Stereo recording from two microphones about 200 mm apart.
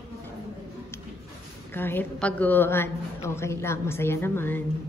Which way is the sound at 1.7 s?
10° left (ahead or behind).